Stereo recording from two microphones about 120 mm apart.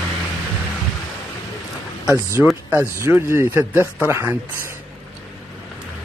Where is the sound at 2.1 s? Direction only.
20° right (ahead or behind).